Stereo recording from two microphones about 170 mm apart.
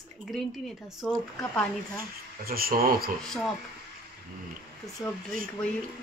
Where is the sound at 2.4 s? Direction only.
60° right (ahead or behind).